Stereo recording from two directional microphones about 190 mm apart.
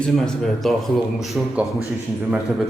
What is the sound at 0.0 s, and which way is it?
A man's voice, 5° left (ahead or behind).